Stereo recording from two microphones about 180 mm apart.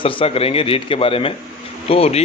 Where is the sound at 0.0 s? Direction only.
30° left (ahead or behind).